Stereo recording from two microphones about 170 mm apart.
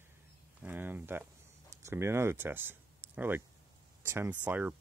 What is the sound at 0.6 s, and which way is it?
Speech, 10° right (ahead or behind).